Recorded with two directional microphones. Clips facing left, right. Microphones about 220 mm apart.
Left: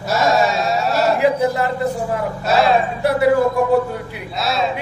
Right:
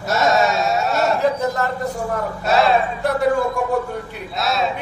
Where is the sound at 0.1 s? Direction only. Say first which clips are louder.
Left 1 dB; centre (ahead or behind).